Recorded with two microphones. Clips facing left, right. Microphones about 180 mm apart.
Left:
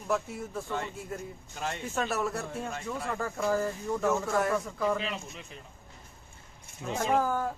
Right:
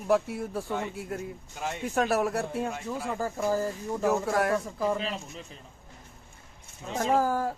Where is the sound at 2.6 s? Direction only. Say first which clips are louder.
Right 3 dB; 10° right (ahead or behind).